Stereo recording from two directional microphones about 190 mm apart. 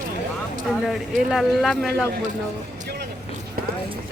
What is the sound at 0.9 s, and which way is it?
A man's voice, centre (ahead or behind).